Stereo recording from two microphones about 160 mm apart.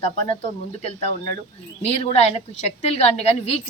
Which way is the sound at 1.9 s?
40° left (ahead or behind).